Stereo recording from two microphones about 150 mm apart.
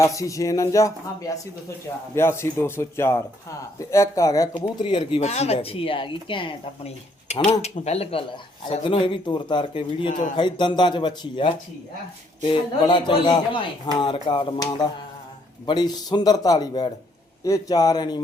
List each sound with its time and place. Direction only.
0.0 s speech: 20° left (ahead or behind)
4.6 s speech: 35° left (ahead or behind)